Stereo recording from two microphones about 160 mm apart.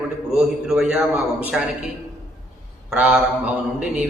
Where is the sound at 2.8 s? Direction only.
5° right (ahead or behind).